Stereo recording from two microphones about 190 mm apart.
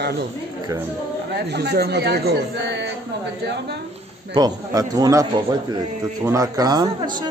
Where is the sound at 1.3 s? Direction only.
60° right (ahead or behind).